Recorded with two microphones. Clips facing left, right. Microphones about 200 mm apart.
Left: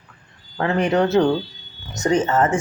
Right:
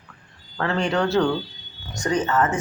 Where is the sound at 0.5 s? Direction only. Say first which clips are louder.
Left 4 dB; 20° left (ahead or behind).